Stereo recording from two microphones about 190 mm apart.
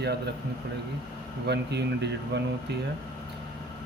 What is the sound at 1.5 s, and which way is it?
Speech, 60° right (ahead or behind).